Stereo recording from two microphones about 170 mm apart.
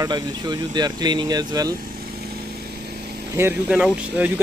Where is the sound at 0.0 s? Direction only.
25° right (ahead or behind).